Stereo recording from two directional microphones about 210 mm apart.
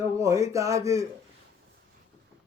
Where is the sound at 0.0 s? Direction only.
15° right (ahead or behind).